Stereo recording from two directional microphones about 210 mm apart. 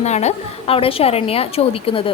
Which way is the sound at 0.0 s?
30° left (ahead or behind).